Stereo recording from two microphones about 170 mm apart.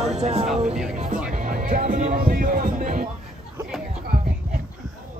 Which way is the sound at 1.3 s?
50° right (ahead or behind).